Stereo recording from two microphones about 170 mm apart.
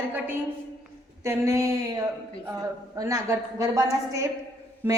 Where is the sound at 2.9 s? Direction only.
20° right (ahead or behind).